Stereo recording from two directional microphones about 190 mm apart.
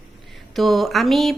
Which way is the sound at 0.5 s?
Centre (ahead or behind).